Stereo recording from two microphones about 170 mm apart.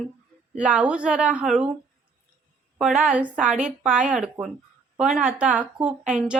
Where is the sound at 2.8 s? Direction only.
Centre (ahead or behind).